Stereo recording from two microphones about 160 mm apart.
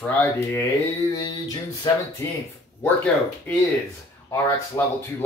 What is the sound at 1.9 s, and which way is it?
Speech, 25° left (ahead or behind).